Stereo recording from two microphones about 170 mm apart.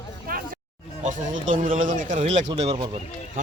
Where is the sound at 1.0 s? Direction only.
45° right (ahead or behind).